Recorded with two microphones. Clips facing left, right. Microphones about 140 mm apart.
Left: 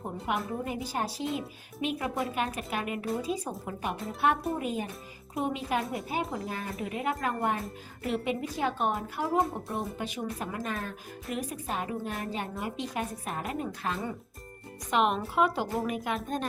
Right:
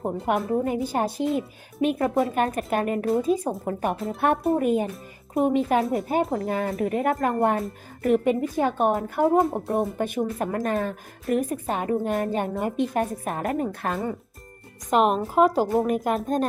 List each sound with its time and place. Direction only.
0.0 s a woman's voice: 50° right (ahead or behind)
5.8 s speech: centre (ahead or behind)
6.3 s a woman's voice: 50° right (ahead or behind)